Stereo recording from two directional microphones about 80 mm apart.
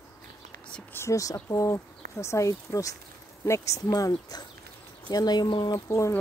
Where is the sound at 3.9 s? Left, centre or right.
Left.